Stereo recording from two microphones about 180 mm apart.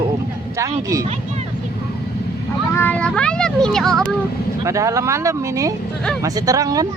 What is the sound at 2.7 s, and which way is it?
Speech, 10° left (ahead or behind).